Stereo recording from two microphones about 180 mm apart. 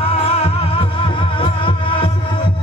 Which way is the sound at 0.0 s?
35° left (ahead or behind).